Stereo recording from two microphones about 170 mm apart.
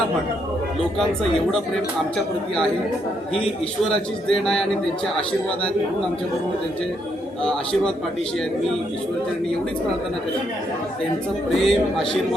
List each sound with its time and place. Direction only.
0.9 s speech: centre (ahead or behind)
3.9 s speech: 5° left (ahead or behind)
7.4 s speech: 5° left (ahead or behind)
11.5 s speech: centre (ahead or behind)